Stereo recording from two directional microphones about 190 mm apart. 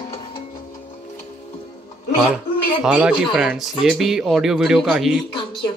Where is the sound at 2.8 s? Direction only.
5° right (ahead or behind).